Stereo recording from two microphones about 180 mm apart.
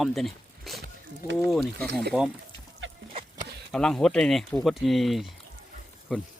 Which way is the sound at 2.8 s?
90° right.